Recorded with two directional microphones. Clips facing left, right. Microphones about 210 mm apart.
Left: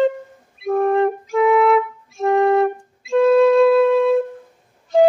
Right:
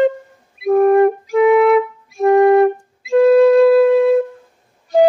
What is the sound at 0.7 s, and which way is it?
Flute, 15° right (ahead or behind).